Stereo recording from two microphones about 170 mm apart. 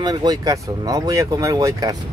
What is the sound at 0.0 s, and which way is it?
Speech, 25° right (ahead or behind).